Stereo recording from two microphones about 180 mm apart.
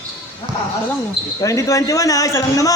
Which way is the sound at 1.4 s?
20° left (ahead or behind).